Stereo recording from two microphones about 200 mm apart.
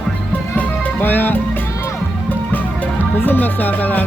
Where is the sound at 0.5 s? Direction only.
10° left (ahead or behind).